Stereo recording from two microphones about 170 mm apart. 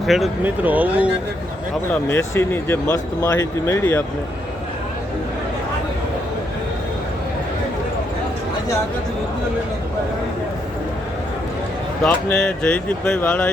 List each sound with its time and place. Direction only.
0.0 s speech: centre (ahead or behind)
1.9 s speech: 15° left (ahead or behind)
12.0 s speech: 5° left (ahead or behind)